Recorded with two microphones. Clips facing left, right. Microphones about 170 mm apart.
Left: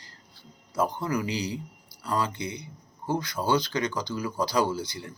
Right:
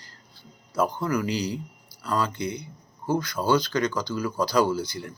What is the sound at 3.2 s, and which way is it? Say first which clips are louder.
Speech: right 2 dB; 20° left (ahead or behind).